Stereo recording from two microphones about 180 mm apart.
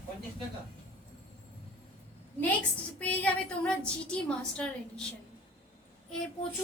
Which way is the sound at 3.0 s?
5° left (ahead or behind).